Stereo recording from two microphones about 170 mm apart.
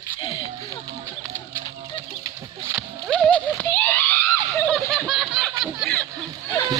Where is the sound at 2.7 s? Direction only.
5° left (ahead or behind).